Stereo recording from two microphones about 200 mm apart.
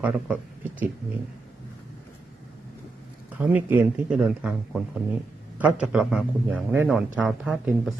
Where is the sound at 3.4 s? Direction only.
10° right (ahead or behind).